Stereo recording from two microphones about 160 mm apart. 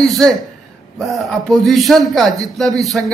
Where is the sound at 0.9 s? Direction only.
Centre (ahead or behind).